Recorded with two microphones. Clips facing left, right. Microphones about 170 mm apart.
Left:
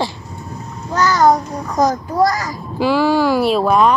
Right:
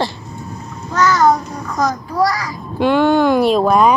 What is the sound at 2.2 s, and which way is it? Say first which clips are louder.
Speech: left 1 dB; 45° left (ahead or behind).